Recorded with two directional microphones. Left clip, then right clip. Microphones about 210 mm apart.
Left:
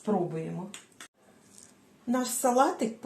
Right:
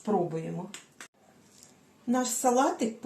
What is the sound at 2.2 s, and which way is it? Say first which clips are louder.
Speech: left 1 dB; 15° left (ahead or behind).